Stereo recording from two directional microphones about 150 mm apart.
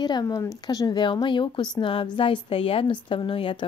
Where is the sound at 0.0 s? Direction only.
25° left (ahead or behind).